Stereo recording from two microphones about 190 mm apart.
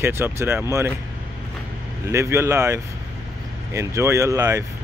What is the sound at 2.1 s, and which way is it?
Speech, 15° right (ahead or behind).